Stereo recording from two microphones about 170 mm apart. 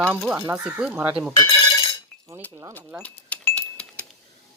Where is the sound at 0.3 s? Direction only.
15° right (ahead or behind).